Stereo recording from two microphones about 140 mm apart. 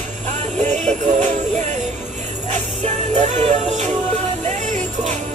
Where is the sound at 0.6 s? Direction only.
60° right (ahead or behind).